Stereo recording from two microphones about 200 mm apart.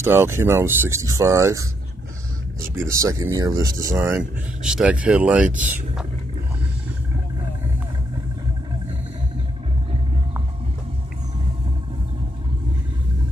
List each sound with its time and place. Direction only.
0.0 s speech: 10° right (ahead or behind)
2.7 s speech: 15° right (ahead or behind)